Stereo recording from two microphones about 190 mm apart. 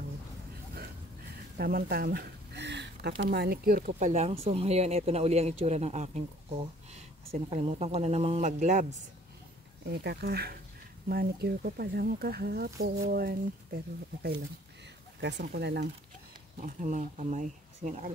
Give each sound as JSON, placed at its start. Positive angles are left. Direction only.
{"t": 1.6, "sound": "speech", "side_deg": -55}
{"t": 9.8, "sound": "speech", "side_deg": -60}
{"t": 15.1, "sound": "speech", "side_deg": -65}
{"t": 15.4, "sound": "speech", "side_deg": -55}
{"t": 16.6, "sound": "speech", "side_deg": -40}